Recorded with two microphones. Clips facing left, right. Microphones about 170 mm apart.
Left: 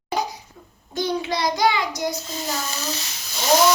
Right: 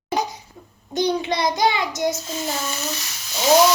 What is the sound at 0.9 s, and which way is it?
A woman's voice, 20° right (ahead or behind).